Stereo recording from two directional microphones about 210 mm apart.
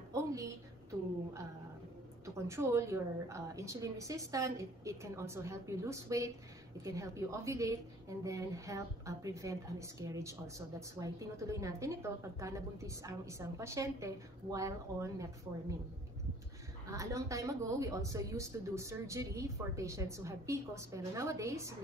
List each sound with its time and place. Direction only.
0.1 s a sound: 15° right (ahead or behind)
2.2 s speech: 15° right (ahead or behind)
16.9 s speech: 15° right (ahead or behind)